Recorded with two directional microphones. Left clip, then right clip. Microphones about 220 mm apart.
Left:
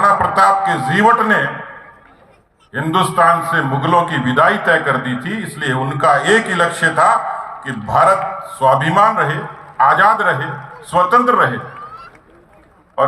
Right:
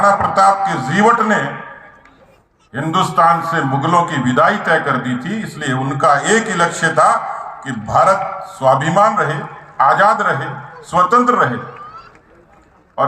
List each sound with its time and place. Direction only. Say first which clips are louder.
0.0 s a man's voice: even; 30° right (ahead or behind)
2.7 s a man's voice: even; 30° right (ahead or behind)
13.0 s a man's voice: left 1 dB; 30° right (ahead or behind)